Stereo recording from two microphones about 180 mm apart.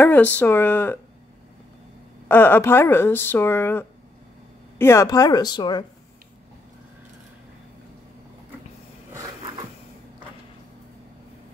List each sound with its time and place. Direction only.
0.0 s speech: 10° left (ahead or behind)
2.2 s speech: 10° left (ahead or behind)